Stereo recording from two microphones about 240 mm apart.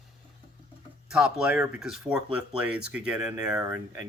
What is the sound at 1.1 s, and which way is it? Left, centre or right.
Speech, centre.